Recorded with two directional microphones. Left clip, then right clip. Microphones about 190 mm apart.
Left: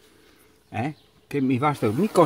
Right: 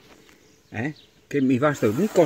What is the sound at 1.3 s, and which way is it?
Speech, 10° right (ahead or behind).